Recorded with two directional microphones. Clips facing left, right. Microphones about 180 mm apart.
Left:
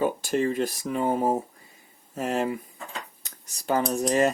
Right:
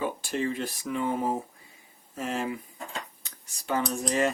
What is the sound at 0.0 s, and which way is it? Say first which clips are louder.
Speech: left 5 dB; 45° left (ahead or behind).